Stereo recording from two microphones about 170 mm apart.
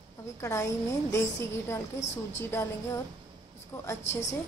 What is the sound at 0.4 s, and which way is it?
Speech, 15° left (ahead or behind).